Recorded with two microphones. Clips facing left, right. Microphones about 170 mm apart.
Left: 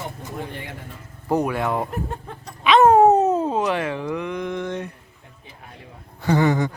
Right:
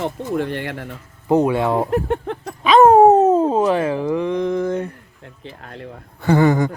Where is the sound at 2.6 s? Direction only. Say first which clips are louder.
Right 4 dB; 35° right (ahead or behind).